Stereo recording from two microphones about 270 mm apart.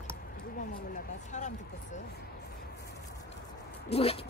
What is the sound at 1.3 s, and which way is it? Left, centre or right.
Speech, left.